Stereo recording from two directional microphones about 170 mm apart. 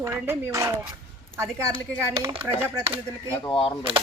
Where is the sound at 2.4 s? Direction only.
15° right (ahead or behind).